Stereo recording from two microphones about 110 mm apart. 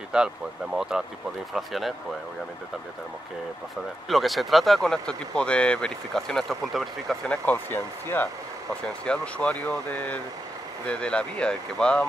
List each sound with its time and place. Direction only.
0.1 s speech: 5° right (ahead or behind)
4.1 s speech: centre (ahead or behind)
7.2 s speech: 15° left (ahead or behind)
8.8 s speech: 10° left (ahead or behind)